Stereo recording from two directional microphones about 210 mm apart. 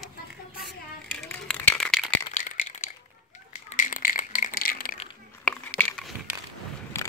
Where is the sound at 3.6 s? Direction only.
35° left (ahead or behind).